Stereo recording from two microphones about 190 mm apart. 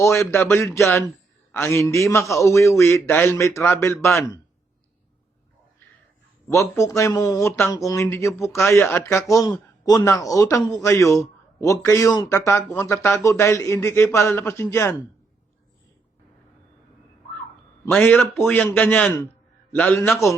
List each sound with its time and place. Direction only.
0.0 s speech: 15° left (ahead or behind)
6.5 s speech: 15° left (ahead or behind)
17.8 s a man's voice: 5° left (ahead or behind)